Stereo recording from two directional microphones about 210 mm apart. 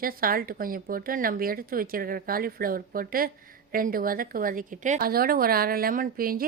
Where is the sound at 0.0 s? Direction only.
45° right (ahead or behind).